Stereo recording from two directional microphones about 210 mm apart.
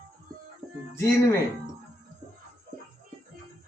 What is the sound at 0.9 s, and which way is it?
Speech, 10° left (ahead or behind).